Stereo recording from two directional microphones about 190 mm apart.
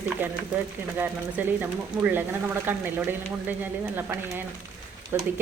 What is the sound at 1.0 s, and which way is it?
Speech, 10° right (ahead or behind).